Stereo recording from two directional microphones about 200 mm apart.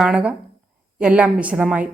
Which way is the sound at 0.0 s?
5° right (ahead or behind).